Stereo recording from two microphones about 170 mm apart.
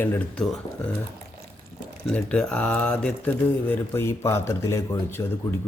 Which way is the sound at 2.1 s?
5° left (ahead or behind).